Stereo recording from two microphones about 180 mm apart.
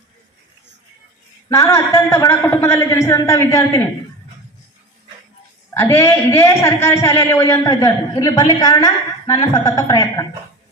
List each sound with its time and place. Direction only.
1.5 s a man's voice: 15° left (ahead or behind)
5.7 s a man's voice: 15° left (ahead or behind)